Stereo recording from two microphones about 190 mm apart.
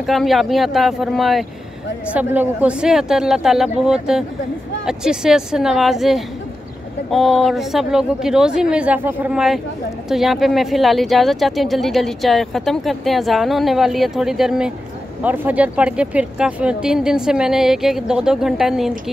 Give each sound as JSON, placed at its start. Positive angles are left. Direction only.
{"t": 0.0, "sound": "a woman's voice", "side_deg": 0}